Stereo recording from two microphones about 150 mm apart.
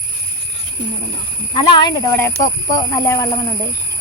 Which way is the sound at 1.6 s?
30° left (ahead or behind).